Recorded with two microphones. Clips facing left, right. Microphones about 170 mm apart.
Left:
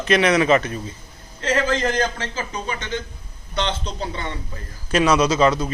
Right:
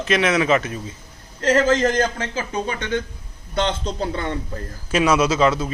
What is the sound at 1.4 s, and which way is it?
Speech, 45° right (ahead or behind).